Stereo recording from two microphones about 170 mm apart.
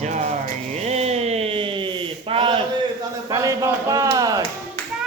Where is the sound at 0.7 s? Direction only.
40° right (ahead or behind).